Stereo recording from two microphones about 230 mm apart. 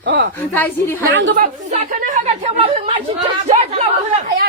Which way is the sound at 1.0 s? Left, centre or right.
Right.